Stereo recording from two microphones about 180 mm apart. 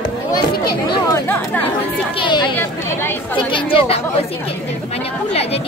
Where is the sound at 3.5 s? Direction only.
30° left (ahead or behind).